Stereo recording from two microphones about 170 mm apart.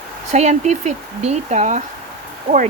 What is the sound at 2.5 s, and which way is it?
Speech, 60° right (ahead or behind).